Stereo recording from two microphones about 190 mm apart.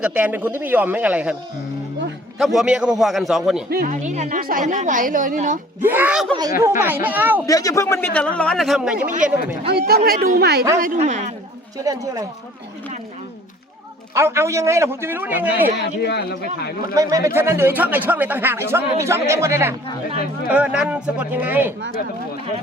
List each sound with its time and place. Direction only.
0.0 s speech: 10° right (ahead or behind)
2.4 s a man's voice: centre (ahead or behind)
3.7 s speech: 55° right (ahead or behind)
4.0 s a woman's voice: 40° right (ahead or behind)
5.8 s speech: 10° right (ahead or behind)
7.4 s a man's voice: 20° left (ahead or behind); by 9.0 s 5° right (ahead or behind)
9.6 s a woman's voice: 55° right (ahead or behind)
10.8 s speech: 40° right (ahead or behind)
11.8 s speech: 20° right (ahead or behind)
14.1 s speech: 15° right (ahead or behind)
15.8 s speech: 60° left (ahead or behind)
16.9 s speech: 15° right (ahead or behind)